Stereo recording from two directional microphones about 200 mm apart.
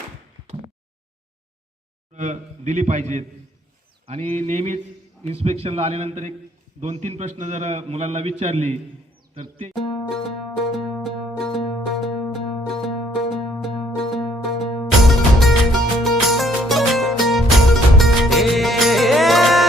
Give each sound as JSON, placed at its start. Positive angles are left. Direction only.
{"t": 2.1, "sound": "a man's voice", "side_deg": -35}
{"t": 4.0, "sound": "a sound", "side_deg": -30}
{"t": 4.4, "sound": "a man's voice", "side_deg": -35}
{"t": 9.3, "sound": "music", "side_deg": -25}
{"t": 9.7, "sound": "music", "side_deg": 0}